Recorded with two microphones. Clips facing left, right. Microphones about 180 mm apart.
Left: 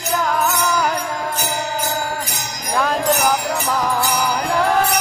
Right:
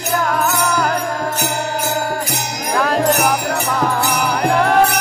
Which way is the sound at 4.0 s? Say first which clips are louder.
Right 2 dB; 65° right (ahead or behind).